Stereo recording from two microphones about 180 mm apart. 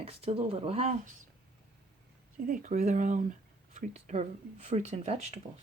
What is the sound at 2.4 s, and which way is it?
Speech, 45° right (ahead or behind).